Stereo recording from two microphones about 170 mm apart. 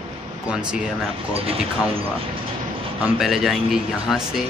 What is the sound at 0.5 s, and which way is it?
Speech, 5° right (ahead or behind).